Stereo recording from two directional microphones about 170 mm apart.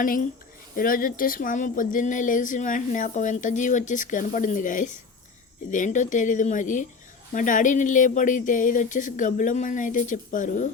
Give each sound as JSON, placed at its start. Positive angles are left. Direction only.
{"t": 0.0, "sound": "speech", "side_deg": 55}